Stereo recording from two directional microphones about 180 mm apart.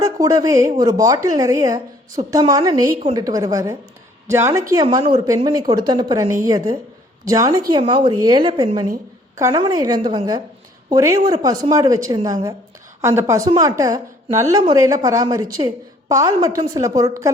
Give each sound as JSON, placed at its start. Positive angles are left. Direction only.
{"t": 0.0, "sound": "a woman's voice", "side_deg": -20}